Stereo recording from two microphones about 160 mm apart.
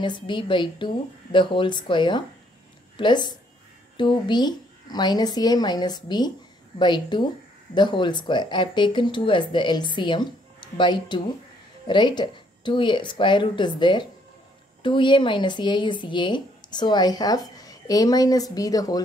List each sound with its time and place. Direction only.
0.0 s speech: 30° left (ahead or behind)